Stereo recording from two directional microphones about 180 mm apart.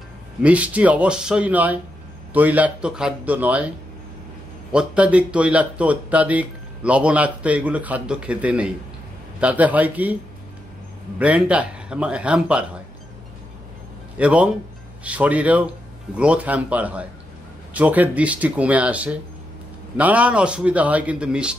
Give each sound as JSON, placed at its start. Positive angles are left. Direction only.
{"t": 0.4, "sound": "speech", "side_deg": -5}
{"t": 4.7, "sound": "speech", "side_deg": -5}
{"t": 11.1, "sound": "speech", "side_deg": -5}
{"t": 14.1, "sound": "speech", "side_deg": -5}